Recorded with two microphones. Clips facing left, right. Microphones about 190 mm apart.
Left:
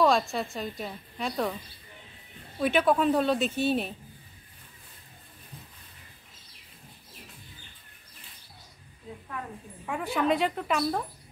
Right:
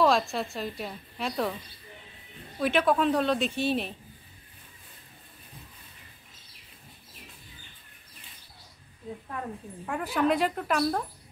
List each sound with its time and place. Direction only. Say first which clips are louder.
0.0 s a woman's voice: even; centre (ahead or behind)
2.6 s a woman's voice: left 1 dB; centre (ahead or behind)
9.8 s a woman's voice: right 1 dB; centre (ahead or behind)